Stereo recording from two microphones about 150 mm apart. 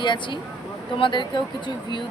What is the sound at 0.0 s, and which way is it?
Speech, 30° left (ahead or behind).